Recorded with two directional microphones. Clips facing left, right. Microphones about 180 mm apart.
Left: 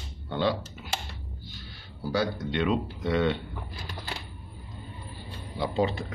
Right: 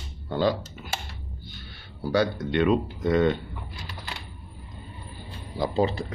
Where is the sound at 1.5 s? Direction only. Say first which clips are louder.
Right 1 dB; 65° right (ahead or behind); by 3.4 s 45° right (ahead or behind).